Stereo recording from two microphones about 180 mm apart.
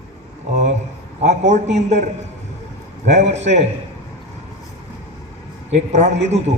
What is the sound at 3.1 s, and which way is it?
Speech, 40° right (ahead or behind).